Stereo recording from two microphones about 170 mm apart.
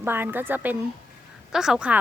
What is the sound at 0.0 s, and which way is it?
Speech, 10° right (ahead or behind).